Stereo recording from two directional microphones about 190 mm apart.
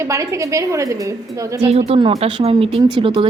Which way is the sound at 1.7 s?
30° right (ahead or behind).